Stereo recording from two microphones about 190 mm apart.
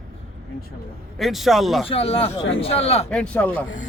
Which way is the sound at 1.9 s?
30° left (ahead or behind).